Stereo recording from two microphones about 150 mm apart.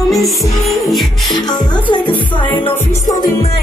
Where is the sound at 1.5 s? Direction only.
30° left (ahead or behind).